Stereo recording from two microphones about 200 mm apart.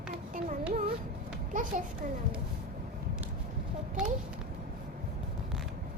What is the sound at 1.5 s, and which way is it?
Speech, 40° right (ahead or behind).